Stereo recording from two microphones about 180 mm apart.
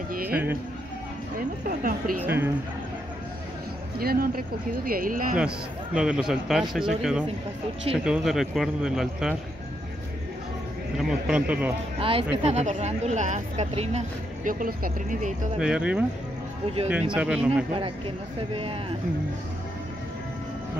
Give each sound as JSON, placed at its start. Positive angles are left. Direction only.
{"t": 0.1, "sound": "speech", "side_deg": -55}
{"t": 1.7, "sound": "speech", "side_deg": -55}
{"t": 2.2, "sound": "a man's voice", "side_deg": -10}
{"t": 4.0, "sound": "speech", "side_deg": -55}
{"t": 5.9, "sound": "speech", "side_deg": -5}
{"t": 11.0, "sound": "a man's voice", "side_deg": -5}
{"t": 12.0, "sound": "speech", "side_deg": -30}
{"t": 15.6, "sound": "speech", "side_deg": -5}
{"t": 17.1, "sound": "speech", "side_deg": -5}
{"t": 17.7, "sound": "speech", "side_deg": -30}